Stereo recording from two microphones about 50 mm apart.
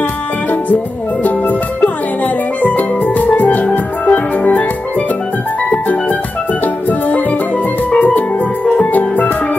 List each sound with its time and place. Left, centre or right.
3.2 s music: left
7.9 s music: left